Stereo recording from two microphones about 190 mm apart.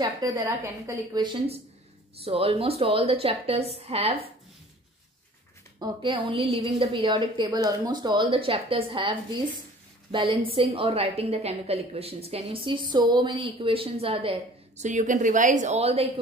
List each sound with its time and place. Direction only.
0.0 s a woman's voice: 20° right (ahead or behind)
5.8 s a woman's voice: 25° right (ahead or behind)
10.1 s a woman's voice: 25° right (ahead or behind)
14.9 s a woman's voice: 40° right (ahead or behind)